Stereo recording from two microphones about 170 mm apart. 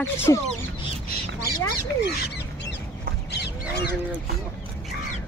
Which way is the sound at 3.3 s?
80° left.